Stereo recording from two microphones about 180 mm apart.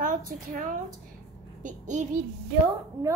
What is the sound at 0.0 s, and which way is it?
A woman's voice, 45° right (ahead or behind).